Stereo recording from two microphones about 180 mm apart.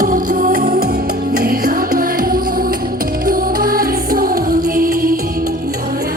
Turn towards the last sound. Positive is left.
turn(degrees=-50)  # may be behind; listen again after turning